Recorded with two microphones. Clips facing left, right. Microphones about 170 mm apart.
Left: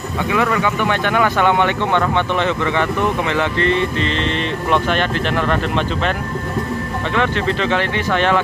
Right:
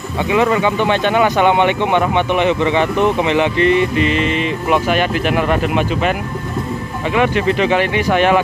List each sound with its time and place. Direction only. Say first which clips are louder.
0.3 s speech: right 4 dB; 20° right (ahead or behind)
7.2 s speech: right 4 dB; 15° right (ahead or behind)